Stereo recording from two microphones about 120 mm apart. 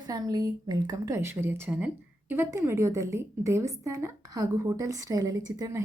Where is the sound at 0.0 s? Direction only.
35° right (ahead or behind).